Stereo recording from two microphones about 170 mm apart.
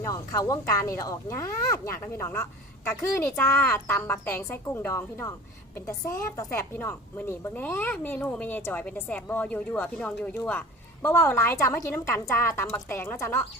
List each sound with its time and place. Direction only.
0.0 s a woman's voice: 20° left (ahead or behind)